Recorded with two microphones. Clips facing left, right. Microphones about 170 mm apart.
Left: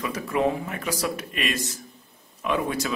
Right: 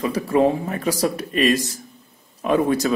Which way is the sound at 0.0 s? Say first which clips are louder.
Right 6 dB; 30° right (ahead or behind).